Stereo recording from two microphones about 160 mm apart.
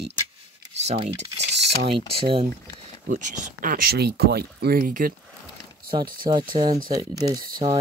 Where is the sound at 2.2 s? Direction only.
40° right (ahead or behind).